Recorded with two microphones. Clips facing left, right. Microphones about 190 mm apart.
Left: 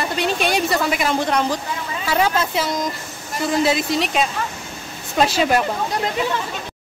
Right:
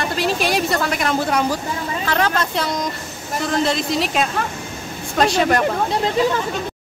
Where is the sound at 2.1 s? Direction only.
5° left (ahead or behind).